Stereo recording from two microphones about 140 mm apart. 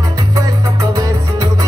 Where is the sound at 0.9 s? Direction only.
25° right (ahead or behind).